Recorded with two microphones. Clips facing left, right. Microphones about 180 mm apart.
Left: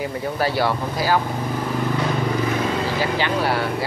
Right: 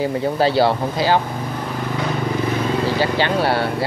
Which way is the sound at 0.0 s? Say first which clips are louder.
Right 5 dB; 30° right (ahead or behind).